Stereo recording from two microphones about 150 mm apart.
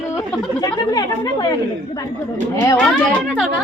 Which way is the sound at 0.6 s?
25° left (ahead or behind).